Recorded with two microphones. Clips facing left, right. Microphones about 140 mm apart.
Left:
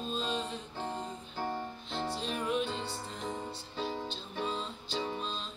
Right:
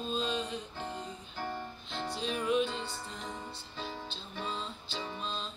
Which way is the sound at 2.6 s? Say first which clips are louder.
Even; 35° left (ahead or behind).